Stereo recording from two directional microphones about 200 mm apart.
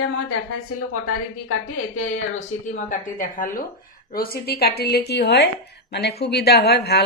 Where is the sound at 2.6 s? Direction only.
40° left (ahead or behind).